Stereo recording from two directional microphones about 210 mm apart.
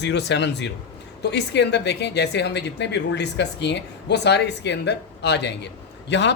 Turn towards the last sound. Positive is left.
turn(degrees=55)  # may be behind; listen again after turning